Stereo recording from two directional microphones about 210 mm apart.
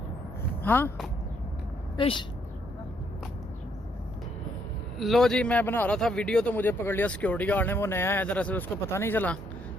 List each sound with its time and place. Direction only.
0.6 s speech: 10° left (ahead or behind)
2.0 s speech: 25° left (ahead or behind)
4.9 s speech: centre (ahead or behind)